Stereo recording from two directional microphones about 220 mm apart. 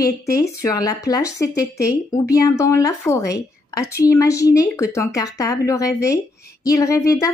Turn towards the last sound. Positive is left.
turn(degrees=15)  # may be behind; listen again after turning